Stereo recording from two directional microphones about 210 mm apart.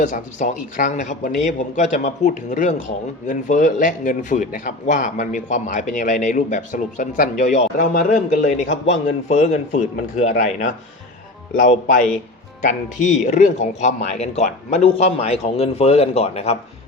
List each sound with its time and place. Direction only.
0.0 s a man's voice: 35° left (ahead or behind)